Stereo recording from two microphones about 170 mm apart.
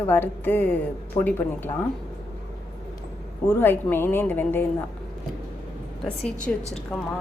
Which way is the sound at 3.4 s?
10° left (ahead or behind).